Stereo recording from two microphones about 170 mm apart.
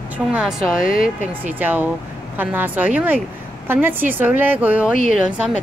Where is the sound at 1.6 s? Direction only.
10° right (ahead or behind).